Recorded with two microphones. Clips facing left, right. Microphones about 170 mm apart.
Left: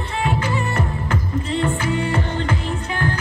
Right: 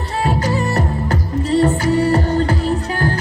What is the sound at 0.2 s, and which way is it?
Music, 40° right (ahead or behind).